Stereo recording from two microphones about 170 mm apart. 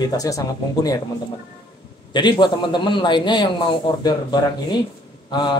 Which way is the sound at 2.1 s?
25° left (ahead or behind).